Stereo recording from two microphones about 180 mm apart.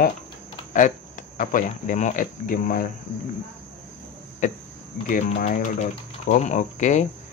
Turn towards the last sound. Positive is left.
turn(degrees=40)  # may be behind; listen again after turning